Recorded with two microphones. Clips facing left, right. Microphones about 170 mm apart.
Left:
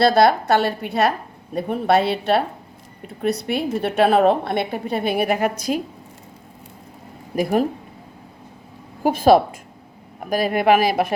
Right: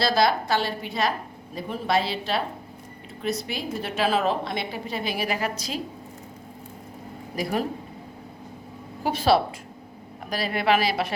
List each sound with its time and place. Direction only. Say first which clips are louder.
0.0 s a woman's voice: left 7 dB; 60° left (ahead or behind)
9.0 s speech: left 7 dB; 50° left (ahead or behind)